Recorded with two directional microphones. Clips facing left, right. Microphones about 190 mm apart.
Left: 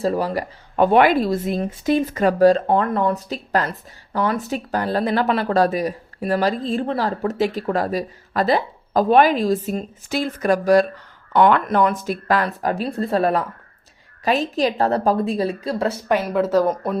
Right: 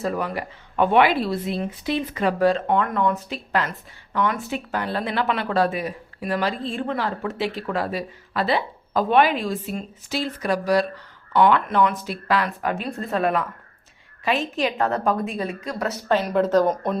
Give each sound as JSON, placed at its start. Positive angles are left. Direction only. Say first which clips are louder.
{"t": 0.0, "sound": "speech", "louder": "left 5 dB", "side_deg": 30}
{"t": 16.0, "sound": "speech", "louder": "right 1 dB", "side_deg": 10}